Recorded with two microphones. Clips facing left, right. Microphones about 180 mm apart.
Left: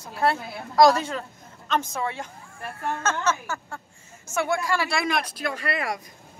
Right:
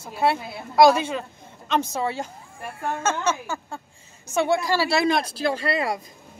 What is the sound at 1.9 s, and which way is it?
Speech, 35° right (ahead or behind).